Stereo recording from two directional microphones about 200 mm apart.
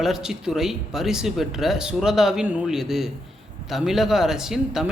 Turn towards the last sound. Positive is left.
turn(degrees=0)  # may be behind; listen again after turning